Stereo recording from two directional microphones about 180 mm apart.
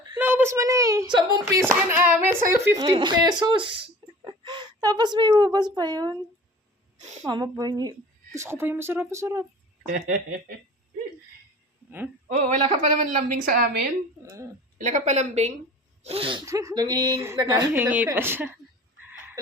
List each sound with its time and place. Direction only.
0.2 s a child's voice: 10° right (ahead or behind)
1.6 s a child's voice: 10° right (ahead or behind)
7.3 s a child's voice: 20° right (ahead or behind)
9.9 s a woman's voice: 45° right (ahead or behind)
11.9 s a sound: 10° right (ahead or behind)
12.3 s a woman's voice: 40° right (ahead or behind); by 13.8 s 55° right (ahead or behind)
14.2 s a child's voice: 15° right (ahead or behind)
14.8 s a woman's voice: 40° right (ahead or behind)
16.5 s speech: 15° right (ahead or behind)
17.8 s a child's voice: 10° right (ahead or behind)